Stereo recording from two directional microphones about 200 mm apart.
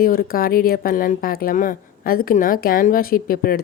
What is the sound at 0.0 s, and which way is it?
Speech, 45° left (ahead or behind).